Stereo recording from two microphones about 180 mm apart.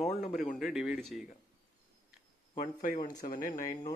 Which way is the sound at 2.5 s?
50° left (ahead or behind).